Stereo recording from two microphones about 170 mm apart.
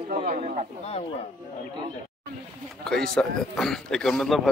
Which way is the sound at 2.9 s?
5° left (ahead or behind).